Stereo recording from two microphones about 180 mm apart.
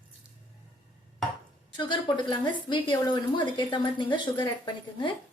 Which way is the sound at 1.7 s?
25° left (ahead or behind).